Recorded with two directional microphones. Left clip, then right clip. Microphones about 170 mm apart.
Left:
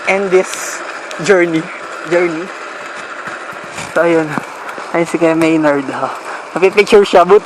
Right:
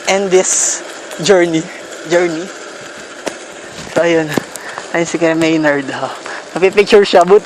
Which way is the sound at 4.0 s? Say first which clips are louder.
Even; 30° left (ahead or behind).